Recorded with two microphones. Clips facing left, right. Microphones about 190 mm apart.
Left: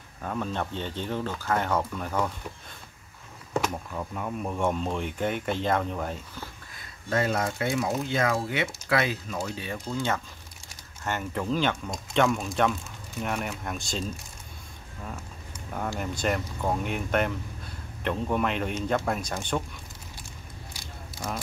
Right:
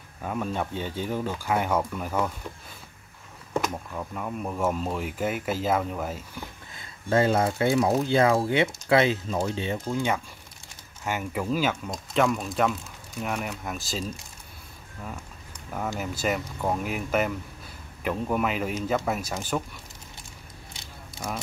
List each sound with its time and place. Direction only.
0.2 s speech: 10° right (ahead or behind)
3.6 s speech: centre (ahead or behind)
6.4 s a sound: 25° right (ahead or behind)
8.1 s speech: 30° right (ahead or behind)
9.8 s speech: 10° right (ahead or behind)
16.0 s speech: 5° right (ahead or behind)